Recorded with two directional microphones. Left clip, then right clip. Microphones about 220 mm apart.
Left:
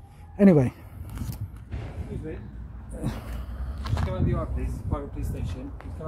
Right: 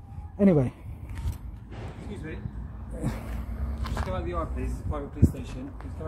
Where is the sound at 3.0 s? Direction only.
Centre (ahead or behind).